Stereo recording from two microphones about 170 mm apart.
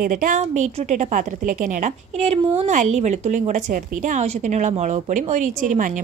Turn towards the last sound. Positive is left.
turn(degrees=-50)  # may be behind; listen again after turning